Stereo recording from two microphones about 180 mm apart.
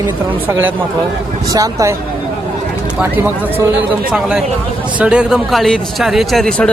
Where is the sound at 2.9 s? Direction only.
10° right (ahead or behind).